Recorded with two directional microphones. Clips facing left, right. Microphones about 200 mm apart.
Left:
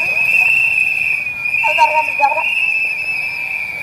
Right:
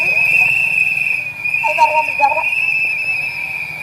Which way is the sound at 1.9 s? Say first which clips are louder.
Even; centre (ahead or behind).